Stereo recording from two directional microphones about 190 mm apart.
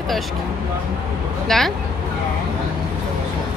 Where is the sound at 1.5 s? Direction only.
Centre (ahead or behind).